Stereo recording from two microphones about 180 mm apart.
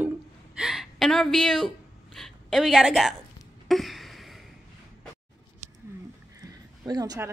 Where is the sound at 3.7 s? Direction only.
Centre (ahead or behind).